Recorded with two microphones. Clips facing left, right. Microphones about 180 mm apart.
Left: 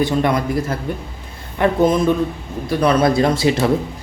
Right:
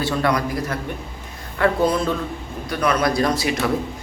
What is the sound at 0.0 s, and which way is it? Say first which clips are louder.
Speech: left 4 dB; 20° left (ahead or behind).